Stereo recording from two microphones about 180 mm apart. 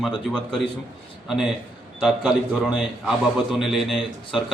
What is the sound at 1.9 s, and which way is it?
A man's voice, 5° right (ahead or behind).